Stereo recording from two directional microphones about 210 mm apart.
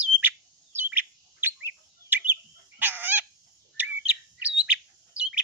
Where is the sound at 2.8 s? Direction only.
10° right (ahead or behind).